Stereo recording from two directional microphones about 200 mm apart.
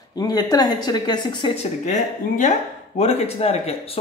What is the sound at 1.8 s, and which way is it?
Speech, 35° left (ahead or behind).